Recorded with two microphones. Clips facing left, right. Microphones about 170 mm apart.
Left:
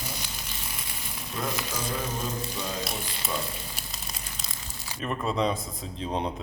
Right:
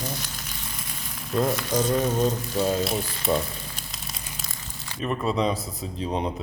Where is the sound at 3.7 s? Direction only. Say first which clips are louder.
Right 1 dB; centre (ahead or behind).